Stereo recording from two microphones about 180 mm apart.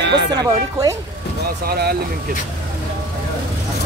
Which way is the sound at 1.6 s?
60° right (ahead or behind).